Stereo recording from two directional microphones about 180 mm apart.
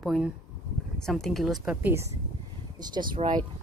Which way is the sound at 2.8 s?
25° right (ahead or behind).